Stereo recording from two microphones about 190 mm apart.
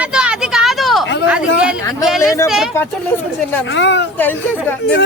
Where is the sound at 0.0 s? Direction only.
5° right (ahead or behind).